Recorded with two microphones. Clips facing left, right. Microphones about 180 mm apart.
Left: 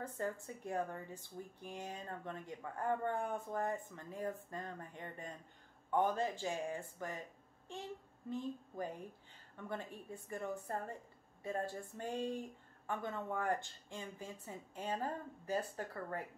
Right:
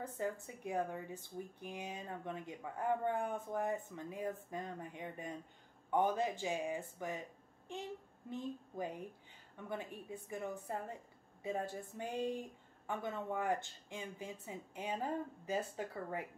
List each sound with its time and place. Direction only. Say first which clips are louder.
0.0 s speech: right 1 dB; 15° right (ahead or behind)
8.3 s speech: left 1 dB; 15° right (ahead or behind)